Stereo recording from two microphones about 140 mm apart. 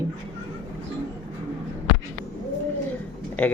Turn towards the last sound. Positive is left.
turn(degrees=10)  # may be behind; listen again after turning